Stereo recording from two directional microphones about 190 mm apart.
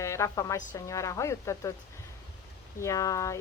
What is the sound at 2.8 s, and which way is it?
Speech, 15° left (ahead or behind).